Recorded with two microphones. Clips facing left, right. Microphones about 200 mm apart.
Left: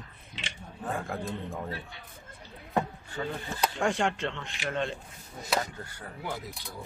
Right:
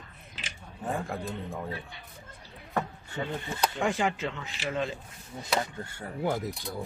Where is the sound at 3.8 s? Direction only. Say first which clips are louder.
Left 1 dB; centre (ahead or behind).